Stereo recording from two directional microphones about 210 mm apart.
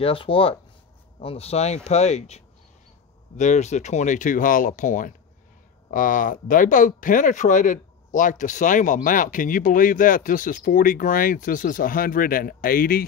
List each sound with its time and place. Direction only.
0.0 s speech: 25° left (ahead or behind); by 13.0 s 45° left (ahead or behind)